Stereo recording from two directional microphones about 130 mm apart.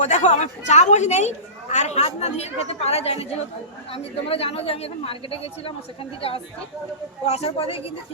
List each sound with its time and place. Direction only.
0.0 s a woman's voice: 65° left (ahead or behind); by 7.9 s 50° left (ahead or behind)